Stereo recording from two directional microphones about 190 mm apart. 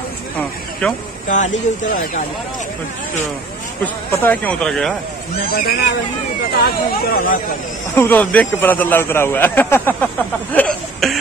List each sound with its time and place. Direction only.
0.8 s speech: 5° left (ahead or behind)
1.3 s speech: 40° left (ahead or behind)
3.8 s speech: 10° left (ahead or behind)
5.5 s speech: 55° left (ahead or behind)
7.1 s speech: 50° left (ahead or behind)
7.9 s speech: 10° left (ahead or behind)